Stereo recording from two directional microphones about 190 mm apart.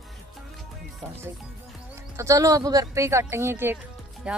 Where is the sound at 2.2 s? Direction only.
15° right (ahead or behind).